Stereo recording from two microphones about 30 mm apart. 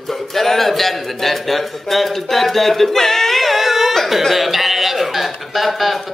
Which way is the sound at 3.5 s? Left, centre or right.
Centre.